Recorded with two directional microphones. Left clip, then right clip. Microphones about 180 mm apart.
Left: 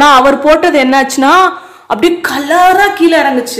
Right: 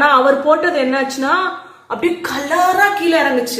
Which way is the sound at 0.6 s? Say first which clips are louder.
Left 7 dB; 65° left (ahead or behind).